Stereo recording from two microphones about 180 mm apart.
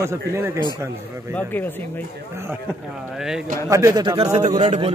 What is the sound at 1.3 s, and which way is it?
Speech, 10° left (ahead or behind).